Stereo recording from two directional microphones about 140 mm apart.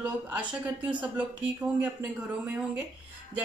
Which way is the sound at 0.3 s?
10° right (ahead or behind).